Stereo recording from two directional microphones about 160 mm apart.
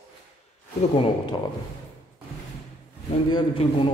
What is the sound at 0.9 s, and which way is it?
Speech, 35° left (ahead or behind).